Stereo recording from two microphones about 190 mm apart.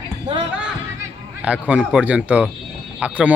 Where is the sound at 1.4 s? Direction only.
5° right (ahead or behind).